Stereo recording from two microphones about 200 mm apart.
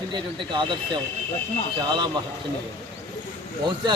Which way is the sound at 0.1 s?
20° right (ahead or behind).